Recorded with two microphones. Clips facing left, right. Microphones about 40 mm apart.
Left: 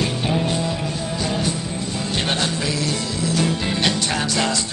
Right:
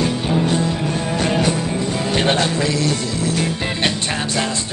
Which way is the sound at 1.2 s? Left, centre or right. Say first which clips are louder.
Right 5 dB; right.